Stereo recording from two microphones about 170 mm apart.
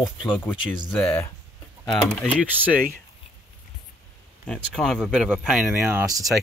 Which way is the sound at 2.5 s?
10° right (ahead or behind).